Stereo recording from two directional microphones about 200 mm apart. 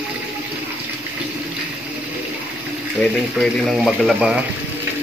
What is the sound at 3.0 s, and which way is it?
Speech, centre (ahead or behind).